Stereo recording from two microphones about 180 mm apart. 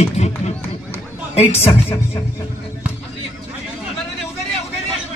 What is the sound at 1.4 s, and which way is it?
Speech, 35° left (ahead or behind).